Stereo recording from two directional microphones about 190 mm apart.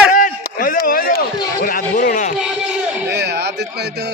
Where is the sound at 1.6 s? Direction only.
45° left (ahead or behind).